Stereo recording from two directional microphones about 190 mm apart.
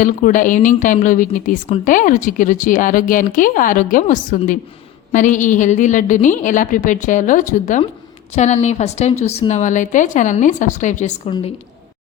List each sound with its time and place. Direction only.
0.0 s a woman's voice: 45° left (ahead or behind)